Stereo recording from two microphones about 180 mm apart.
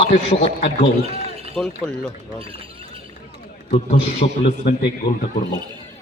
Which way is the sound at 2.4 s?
30° right (ahead or behind).